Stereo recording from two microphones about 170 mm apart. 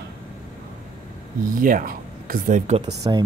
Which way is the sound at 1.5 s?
55° right (ahead or behind).